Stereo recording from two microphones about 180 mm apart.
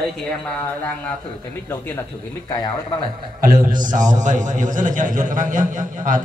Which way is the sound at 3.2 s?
50° right (ahead or behind).